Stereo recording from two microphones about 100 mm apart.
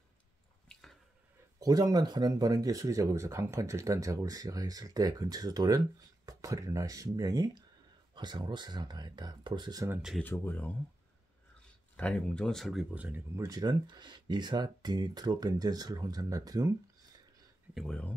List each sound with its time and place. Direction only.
0.7 s drip: 5° left (ahead or behind)
1.6 s speech: 40° right (ahead or behind)
10.2 s speech: 20° left (ahead or behind)
12.0 s speech: 10° left (ahead or behind)
12.9 s speech: 15° right (ahead or behind)
13.4 s speech: 40° right (ahead or behind)
17.7 s speech: 10° left (ahead or behind)